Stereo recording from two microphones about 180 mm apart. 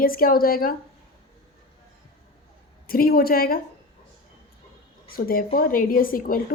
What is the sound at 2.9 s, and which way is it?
Speech, 55° left (ahead or behind).